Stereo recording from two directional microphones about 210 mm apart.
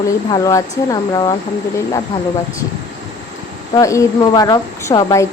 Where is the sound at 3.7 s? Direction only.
15° left (ahead or behind).